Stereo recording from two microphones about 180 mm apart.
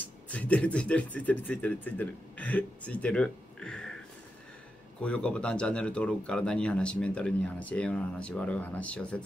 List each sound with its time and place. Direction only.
0.0 s speech: 5° left (ahead or behind)
5.0 s speech: 5° left (ahead or behind)